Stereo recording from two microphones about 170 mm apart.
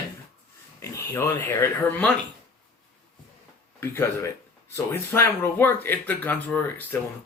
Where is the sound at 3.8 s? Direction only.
15° left (ahead or behind).